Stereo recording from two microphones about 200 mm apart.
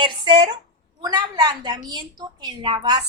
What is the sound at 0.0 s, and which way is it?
A woman's voice, 25° right (ahead or behind).